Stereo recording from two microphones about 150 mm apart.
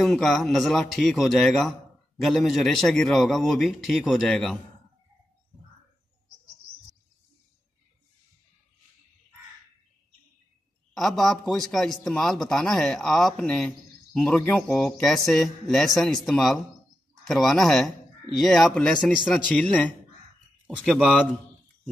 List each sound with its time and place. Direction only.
0.0 s a man's voice: centre (ahead or behind)
11.0 s a man's voice: centre (ahead or behind)
20.6 s a man's voice: 5° right (ahead or behind)